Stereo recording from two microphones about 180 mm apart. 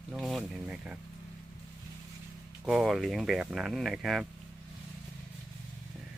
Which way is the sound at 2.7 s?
Centre (ahead or behind).